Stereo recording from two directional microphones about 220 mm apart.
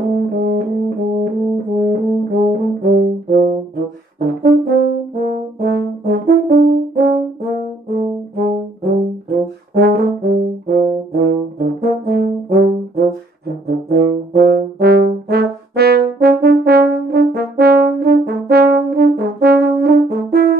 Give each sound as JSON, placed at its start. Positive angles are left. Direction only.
{"t": 0.1, "sound": "brass instrument", "side_deg": -45}